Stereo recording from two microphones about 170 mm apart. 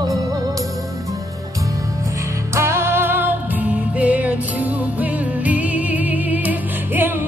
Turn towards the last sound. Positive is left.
turn(degrees=-10)  # may be behind; listen again after turning